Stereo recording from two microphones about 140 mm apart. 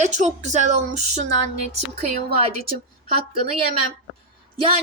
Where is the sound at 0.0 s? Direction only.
55° right (ahead or behind).